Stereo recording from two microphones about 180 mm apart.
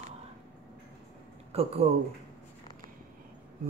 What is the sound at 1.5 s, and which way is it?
Speech, 35° right (ahead or behind).